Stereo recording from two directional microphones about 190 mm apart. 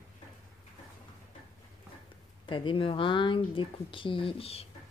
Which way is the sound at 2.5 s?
25° left (ahead or behind).